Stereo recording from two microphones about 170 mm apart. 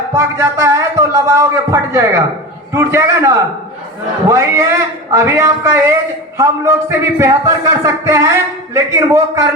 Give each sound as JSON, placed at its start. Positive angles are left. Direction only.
{"t": 0.1, "sound": "a man's voice", "side_deg": -15}